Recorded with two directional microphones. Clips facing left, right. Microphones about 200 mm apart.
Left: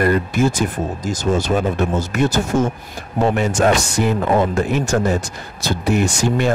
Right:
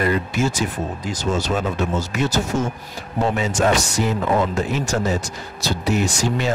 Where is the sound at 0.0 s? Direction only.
50° left (ahead or behind).